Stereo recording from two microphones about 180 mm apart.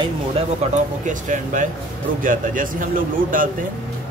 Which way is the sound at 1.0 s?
45° right (ahead or behind).